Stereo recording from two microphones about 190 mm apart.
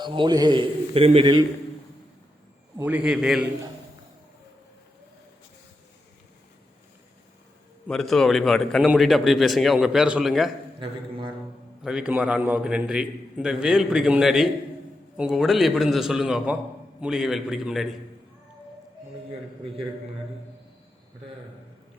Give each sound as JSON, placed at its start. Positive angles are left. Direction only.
{"t": 0.0, "sound": "a man's voice", "side_deg": -25}
{"t": 2.7, "sound": "a man's voice", "side_deg": -10}
{"t": 7.9, "sound": "a man's voice", "side_deg": 0}
{"t": 11.8, "sound": "a man's voice", "side_deg": -5}